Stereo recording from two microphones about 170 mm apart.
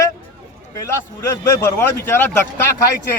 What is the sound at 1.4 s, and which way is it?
Speech, 15° left (ahead or behind).